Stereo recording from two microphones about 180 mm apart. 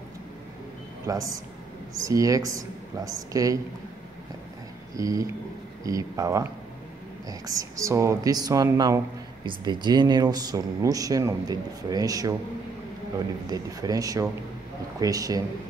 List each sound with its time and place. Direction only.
1.0 s speech: 20° right (ahead or behind)
4.9 s speech: 20° right (ahead or behind)
13.5 s speech: 20° right (ahead or behind)